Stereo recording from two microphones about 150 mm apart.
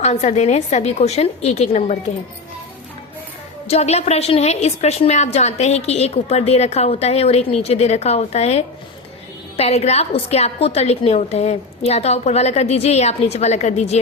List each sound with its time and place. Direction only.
0.0 s a woman's voice: 50° left (ahead or behind)
3.7 s a woman's voice: 45° left (ahead or behind)